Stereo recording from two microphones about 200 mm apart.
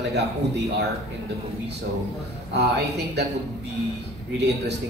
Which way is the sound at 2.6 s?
55° right (ahead or behind).